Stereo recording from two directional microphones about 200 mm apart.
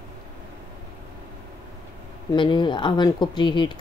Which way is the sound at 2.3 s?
25° left (ahead or behind).